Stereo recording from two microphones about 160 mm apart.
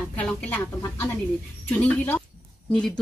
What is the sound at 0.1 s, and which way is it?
A woman's voice, 10° left (ahead or behind).